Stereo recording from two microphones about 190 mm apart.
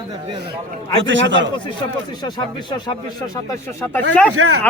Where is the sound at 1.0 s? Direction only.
75° right (ahead or behind).